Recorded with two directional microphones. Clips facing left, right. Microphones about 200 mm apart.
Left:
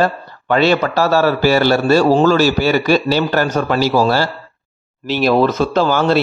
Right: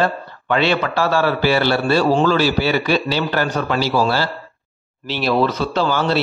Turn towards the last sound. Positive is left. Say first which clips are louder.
# left 4 dB
turn(degrees=50)  # may be behind; listen again after turning